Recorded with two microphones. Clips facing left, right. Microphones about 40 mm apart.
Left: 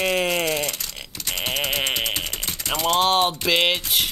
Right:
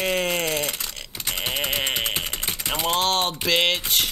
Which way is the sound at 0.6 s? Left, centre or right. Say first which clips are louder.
Even; centre.